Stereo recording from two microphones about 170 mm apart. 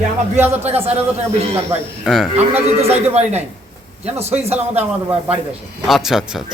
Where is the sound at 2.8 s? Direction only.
40° right (ahead or behind).